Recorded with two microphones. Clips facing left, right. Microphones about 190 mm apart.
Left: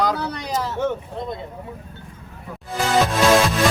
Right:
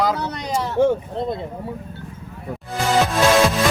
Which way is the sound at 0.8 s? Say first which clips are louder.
Right 6 dB; 30° right (ahead or behind).